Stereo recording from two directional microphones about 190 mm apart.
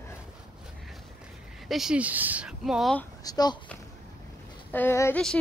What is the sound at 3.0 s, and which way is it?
Speech, 20° left (ahead or behind).